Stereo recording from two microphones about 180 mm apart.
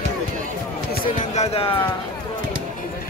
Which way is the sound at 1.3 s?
30° left (ahead or behind).